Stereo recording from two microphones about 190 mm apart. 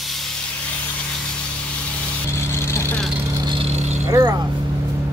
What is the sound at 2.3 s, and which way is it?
Vehicle, 15° left (ahead or behind).